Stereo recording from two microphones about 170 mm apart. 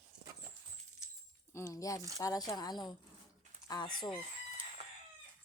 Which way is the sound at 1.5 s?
15° left (ahead or behind).